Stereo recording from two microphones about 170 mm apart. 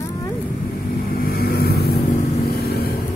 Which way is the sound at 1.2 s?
65° left (ahead or behind).